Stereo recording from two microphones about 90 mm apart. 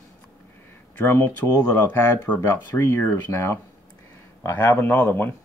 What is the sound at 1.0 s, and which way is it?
Speech, 25° left (ahead or behind).